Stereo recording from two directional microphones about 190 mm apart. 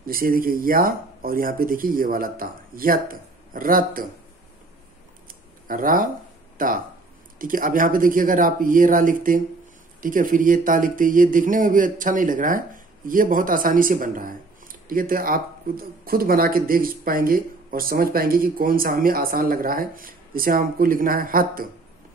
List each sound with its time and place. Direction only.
0.0 s a man's voice: 50° right (ahead or behind)
5.3 s camera: 45° right (ahead or behind)
6.6 s a man's voice: 45° right (ahead or behind)